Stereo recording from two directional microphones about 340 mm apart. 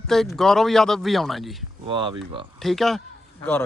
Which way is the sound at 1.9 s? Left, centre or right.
Centre.